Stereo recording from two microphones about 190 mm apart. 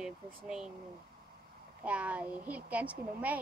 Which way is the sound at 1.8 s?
5° right (ahead or behind).